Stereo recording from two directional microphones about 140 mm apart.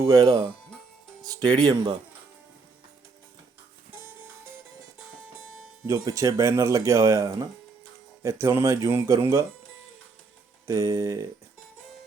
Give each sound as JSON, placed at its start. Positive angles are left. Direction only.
{"t": 0.0, "sound": "speech", "side_deg": -25}
{"t": 5.8, "sound": "speech", "side_deg": -20}
{"t": 10.7, "sound": "speech", "side_deg": -25}